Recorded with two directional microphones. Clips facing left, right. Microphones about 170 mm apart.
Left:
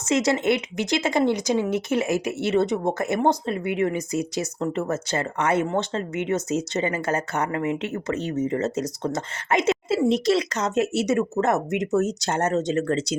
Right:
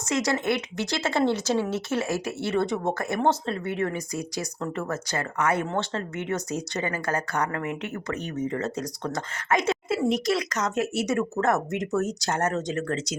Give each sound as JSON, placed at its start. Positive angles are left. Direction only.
{"t": 0.0, "sound": "speech", "side_deg": 25}